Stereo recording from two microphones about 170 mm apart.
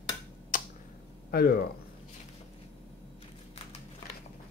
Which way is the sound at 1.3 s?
60° left (ahead or behind).